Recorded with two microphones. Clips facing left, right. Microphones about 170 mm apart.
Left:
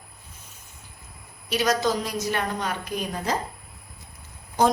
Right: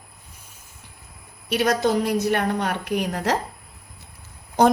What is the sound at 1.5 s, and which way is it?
A woman's voice, 60° right (ahead or behind).